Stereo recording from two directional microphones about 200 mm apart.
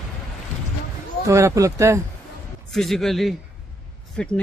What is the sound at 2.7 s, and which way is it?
Speech, centre (ahead or behind).